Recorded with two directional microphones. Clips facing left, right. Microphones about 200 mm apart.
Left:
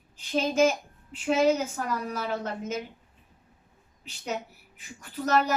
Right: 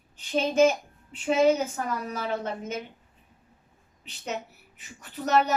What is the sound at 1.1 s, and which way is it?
Child singing, 5° left (ahead or behind).